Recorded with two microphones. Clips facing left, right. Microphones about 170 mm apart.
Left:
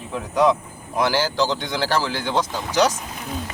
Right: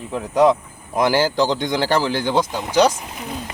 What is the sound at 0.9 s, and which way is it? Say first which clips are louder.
A man's voice: right 4 dB; 15° right (ahead or behind).